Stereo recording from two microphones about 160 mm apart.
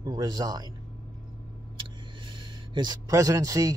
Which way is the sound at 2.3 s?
30° right (ahead or behind).